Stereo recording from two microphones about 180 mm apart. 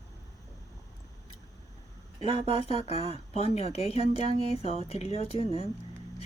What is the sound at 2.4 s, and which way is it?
Speech, 35° left (ahead or behind).